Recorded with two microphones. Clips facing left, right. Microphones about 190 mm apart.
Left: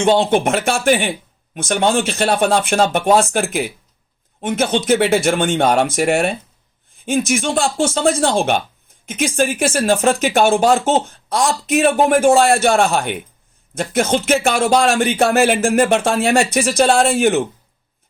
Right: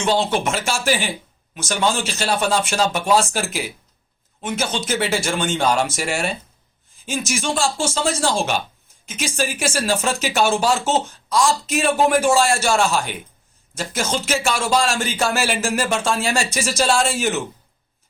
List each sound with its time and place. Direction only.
0.2 s speech: 55° left (ahead or behind)